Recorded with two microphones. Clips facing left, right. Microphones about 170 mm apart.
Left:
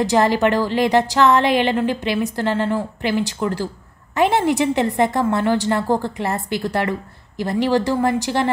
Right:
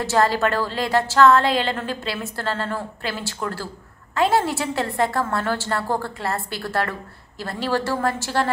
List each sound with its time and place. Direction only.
0.0 s a woman's voice: 15° left (ahead or behind)